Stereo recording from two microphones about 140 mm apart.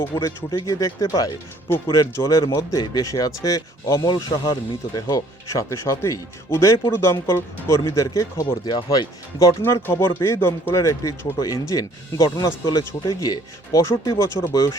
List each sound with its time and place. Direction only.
0.1 s speech: 25° left (ahead or behind)